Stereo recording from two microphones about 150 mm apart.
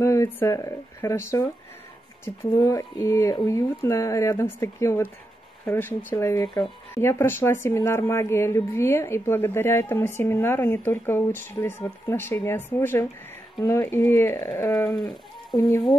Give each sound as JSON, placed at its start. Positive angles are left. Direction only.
{"t": 0.0, "sound": "a woman's voice", "side_deg": 20}
{"t": 14.9, "sound": "sheep", "side_deg": 0}
{"t": 15.5, "sound": "speech", "side_deg": 30}